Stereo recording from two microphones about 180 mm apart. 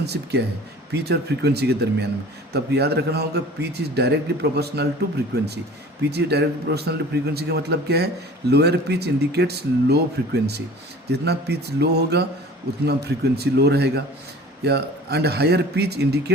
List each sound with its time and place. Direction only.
0.0 s a man's voice: 65° right (ahead or behind)
6.0 s a man's voice: 65° right (ahead or behind)
11.1 s a man's voice: 65° right (ahead or behind)